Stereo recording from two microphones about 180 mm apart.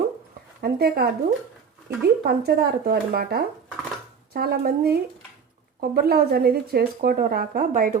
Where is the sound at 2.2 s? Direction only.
60° right (ahead or behind).